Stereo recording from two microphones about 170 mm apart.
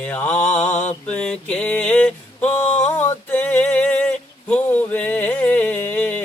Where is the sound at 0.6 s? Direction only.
45° left (ahead or behind).